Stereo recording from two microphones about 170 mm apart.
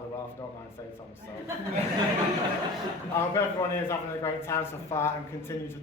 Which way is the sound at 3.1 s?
15° left (ahead or behind).